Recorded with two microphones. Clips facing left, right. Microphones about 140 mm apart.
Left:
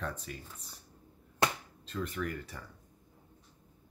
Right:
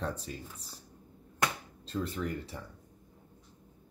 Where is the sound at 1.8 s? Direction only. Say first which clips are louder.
Right 2 dB; 35° right (ahead or behind).